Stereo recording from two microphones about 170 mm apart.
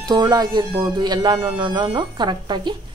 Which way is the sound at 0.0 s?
25° right (ahead or behind).